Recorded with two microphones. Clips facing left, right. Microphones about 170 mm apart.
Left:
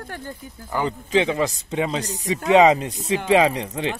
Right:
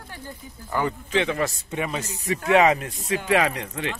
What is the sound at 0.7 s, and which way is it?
Speech, 20° left (ahead or behind).